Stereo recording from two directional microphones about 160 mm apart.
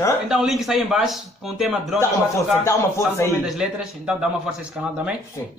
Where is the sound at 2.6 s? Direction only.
15° left (ahead or behind).